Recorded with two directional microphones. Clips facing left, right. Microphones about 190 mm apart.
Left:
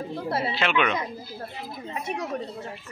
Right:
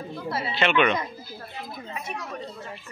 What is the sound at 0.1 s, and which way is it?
Speech, 30° left (ahead or behind).